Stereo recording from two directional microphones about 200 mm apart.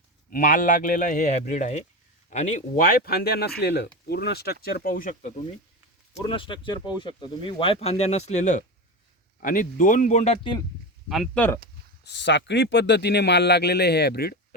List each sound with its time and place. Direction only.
0.3 s speech: 45° left (ahead or behind)
6.2 s speech: 25° left (ahead or behind)
11.1 s speech: centre (ahead or behind)
12.0 s speech: 60° left (ahead or behind)